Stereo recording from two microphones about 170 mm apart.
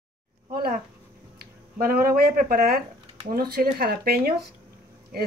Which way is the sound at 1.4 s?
60° right (ahead or behind).